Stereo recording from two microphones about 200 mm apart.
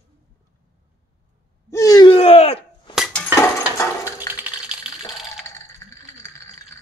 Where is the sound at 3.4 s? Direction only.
15° left (ahead or behind).